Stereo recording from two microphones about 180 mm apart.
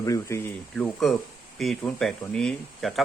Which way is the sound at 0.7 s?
Centre (ahead or behind).